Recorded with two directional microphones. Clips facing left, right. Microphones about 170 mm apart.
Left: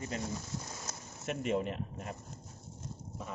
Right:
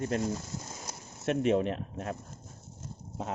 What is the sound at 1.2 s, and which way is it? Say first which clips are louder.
Speech: right 7 dB; 70° right (ahead or behind).